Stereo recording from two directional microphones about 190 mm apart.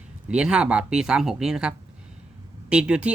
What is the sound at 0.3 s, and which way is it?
A man's voice, 5° right (ahead or behind).